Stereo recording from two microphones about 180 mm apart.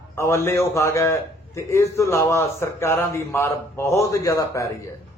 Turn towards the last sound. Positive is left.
turn(degrees=15)  # may be behind; listen again after turning